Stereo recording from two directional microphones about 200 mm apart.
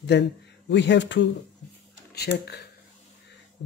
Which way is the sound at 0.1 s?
60° left (ahead or behind).